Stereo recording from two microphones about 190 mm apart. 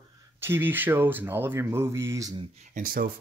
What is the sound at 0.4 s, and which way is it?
Speech, 10° right (ahead or behind).